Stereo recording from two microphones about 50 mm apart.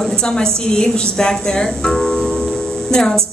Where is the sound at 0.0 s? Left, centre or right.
Centre.